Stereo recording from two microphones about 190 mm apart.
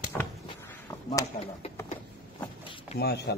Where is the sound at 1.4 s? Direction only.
35° left (ahead or behind).